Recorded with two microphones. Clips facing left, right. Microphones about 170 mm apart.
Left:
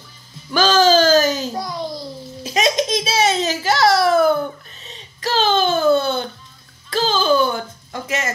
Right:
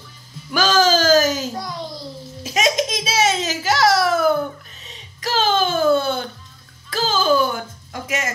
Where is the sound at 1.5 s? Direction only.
10° left (ahead or behind).